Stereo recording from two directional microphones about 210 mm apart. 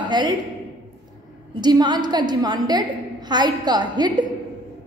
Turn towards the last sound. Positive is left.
turn(degrees=-20)  # may be behind; listen again after turning